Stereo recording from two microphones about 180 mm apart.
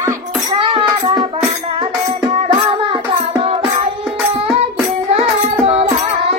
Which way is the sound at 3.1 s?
25° right (ahead or behind).